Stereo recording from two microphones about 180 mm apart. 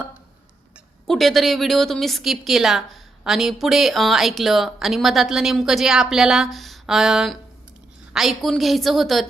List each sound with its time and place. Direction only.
1.0 s a woman's voice: centre (ahead or behind)